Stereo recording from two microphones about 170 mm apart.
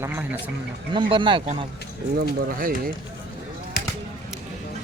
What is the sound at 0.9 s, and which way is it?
Speech, 30° right (ahead or behind).